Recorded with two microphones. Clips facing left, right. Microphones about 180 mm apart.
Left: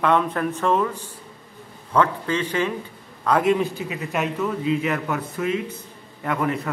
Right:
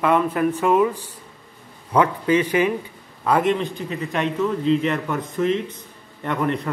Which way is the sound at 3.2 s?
Centre (ahead or behind).